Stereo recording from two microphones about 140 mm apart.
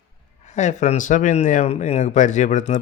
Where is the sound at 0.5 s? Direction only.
55° left (ahead or behind).